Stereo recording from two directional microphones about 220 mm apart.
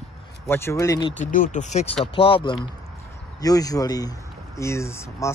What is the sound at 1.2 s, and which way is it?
Speech, 35° left (ahead or behind).